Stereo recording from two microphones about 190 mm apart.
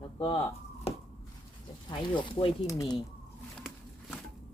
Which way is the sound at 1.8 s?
25° left (ahead or behind).